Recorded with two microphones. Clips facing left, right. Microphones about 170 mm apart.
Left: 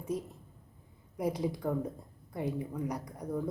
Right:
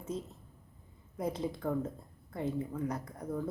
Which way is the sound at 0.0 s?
15° left (ahead or behind).